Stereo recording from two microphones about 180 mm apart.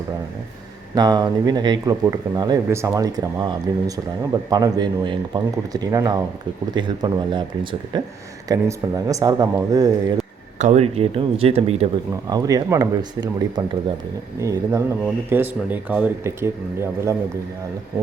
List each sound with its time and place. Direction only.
0.9 s speech: 20° right (ahead or behind)
10.6 s speech: 40° right (ahead or behind)
12.3 s speech: 20° right (ahead or behind)